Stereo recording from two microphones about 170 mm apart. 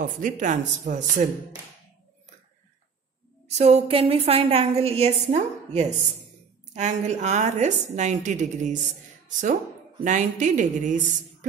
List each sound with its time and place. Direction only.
0.0 s a woman's voice: 50° right (ahead or behind)
3.4 s a woman's voice: 40° right (ahead or behind)
10.0 s a woman's voice: 45° right (ahead or behind)